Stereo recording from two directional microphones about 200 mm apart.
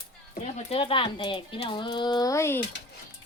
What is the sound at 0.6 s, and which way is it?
Speech, 25° left (ahead or behind).